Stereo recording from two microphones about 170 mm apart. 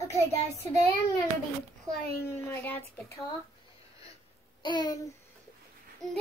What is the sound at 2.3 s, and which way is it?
Speech, 15° left (ahead or behind).